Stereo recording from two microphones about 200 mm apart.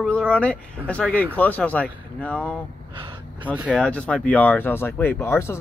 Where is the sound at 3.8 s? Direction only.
5° left (ahead or behind).